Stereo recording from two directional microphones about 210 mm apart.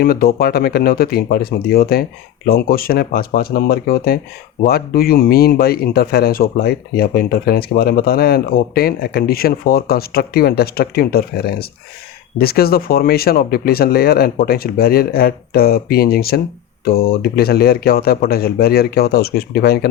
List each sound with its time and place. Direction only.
0.0 s speech: 45° left (ahead or behind)